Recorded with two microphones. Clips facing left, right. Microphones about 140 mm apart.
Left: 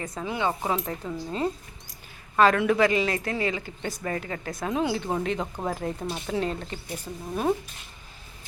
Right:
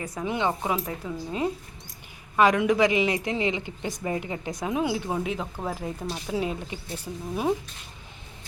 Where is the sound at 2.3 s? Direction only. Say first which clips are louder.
Even; 15° right (ahead or behind).